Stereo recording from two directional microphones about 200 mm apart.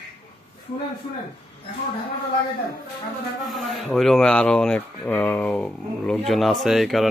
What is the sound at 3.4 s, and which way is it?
Speech, centre (ahead or behind).